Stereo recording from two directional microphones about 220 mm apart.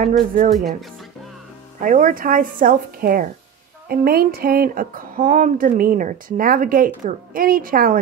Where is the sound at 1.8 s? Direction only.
35° right (ahead or behind).